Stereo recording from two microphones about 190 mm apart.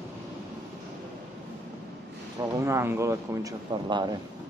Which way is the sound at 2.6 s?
15° right (ahead or behind).